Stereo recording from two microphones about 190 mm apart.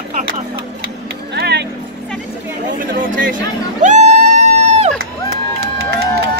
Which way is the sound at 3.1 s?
45° right (ahead or behind).